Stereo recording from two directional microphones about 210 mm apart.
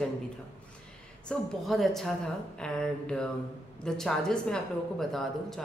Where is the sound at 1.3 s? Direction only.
Centre (ahead or behind).